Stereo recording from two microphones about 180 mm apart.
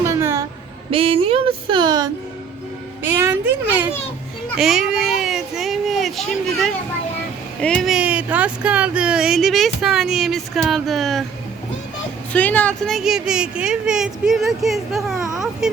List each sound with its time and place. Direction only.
0.0 s music: 15° right (ahead or behind)
0.9 s speech: 30° right (ahead or behind)
3.1 s speech: 10° right (ahead or behind)
4.4 s a sound: centre (ahead or behind)
7.6 s speech: 5° left (ahead or behind)
12.3 s speech: 10° left (ahead or behind)